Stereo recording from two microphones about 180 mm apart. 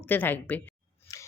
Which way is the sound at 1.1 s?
20° left (ahead or behind).